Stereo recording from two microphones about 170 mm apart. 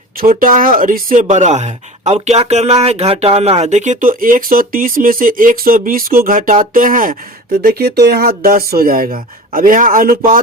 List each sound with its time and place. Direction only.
0.2 s speech: 55° right (ahead or behind)
7.6 s speech: 65° right (ahead or behind)